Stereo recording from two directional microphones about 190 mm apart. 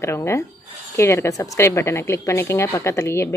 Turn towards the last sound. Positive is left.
turn(degrees=15)  # may be behind; listen again after turning